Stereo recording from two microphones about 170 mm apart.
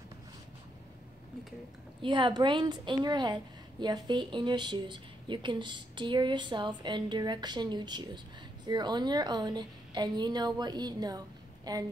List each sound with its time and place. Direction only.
2.0 s speech: 30° right (ahead or behind)